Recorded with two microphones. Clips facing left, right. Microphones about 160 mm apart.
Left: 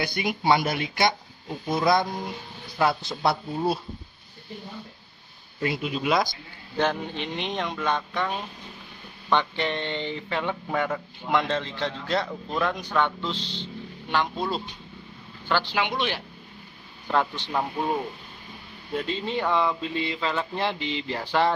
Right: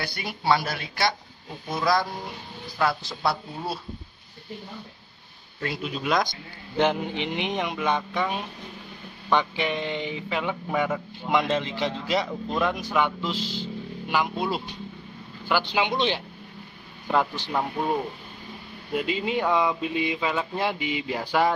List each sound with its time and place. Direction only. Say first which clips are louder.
0.0 s speech: left 4 dB; 15° left (ahead or behind)
5.6 s speech: left 3 dB; 5° left (ahead or behind)
6.8 s speech: right 2 dB; 15° right (ahead or behind)
17.1 s speech: right 1 dB; 10° right (ahead or behind)
18.9 s speech: right 2 dB; 10° right (ahead or behind)